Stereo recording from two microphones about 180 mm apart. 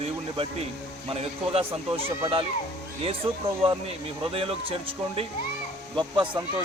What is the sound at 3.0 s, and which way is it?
Speech, 30° right (ahead or behind).